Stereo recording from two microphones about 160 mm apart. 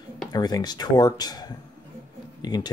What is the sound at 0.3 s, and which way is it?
Speech, 25° left (ahead or behind).